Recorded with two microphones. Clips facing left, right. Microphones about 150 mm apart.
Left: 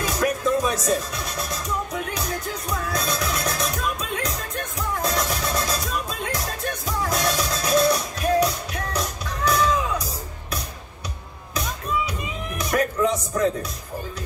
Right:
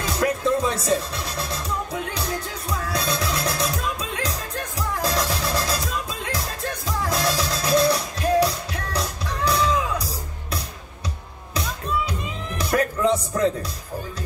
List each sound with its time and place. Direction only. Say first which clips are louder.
0.0 s music: even; 30° right (ahead or behind)
7.1 s music: right 1 dB; 30° right (ahead or behind)
12.5 s music: even; 30° right (ahead or behind)